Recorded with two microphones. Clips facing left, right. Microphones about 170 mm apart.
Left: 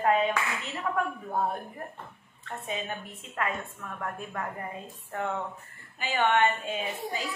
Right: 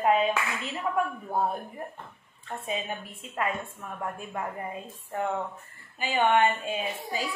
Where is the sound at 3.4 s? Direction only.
25° right (ahead or behind).